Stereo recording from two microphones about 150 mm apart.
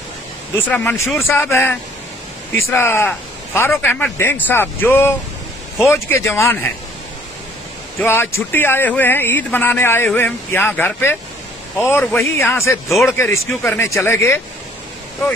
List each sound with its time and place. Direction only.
0.7 s speech: 10° left (ahead or behind)
8.0 s speech: 15° left (ahead or behind)